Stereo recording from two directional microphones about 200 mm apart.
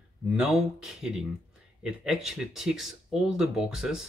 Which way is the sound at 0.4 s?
5° right (ahead or behind).